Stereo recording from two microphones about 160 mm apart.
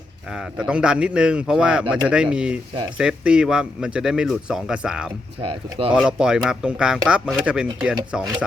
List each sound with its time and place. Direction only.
0.3 s speech: 5° right (ahead or behind)
5.4 s speech: 35° right (ahead or behind)
5.9 s speech: 5° right (ahead or behind)